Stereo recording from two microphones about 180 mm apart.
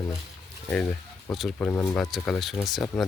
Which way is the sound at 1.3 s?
Centre (ahead or behind).